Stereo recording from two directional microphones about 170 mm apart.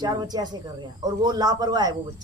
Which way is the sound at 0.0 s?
25° right (ahead or behind).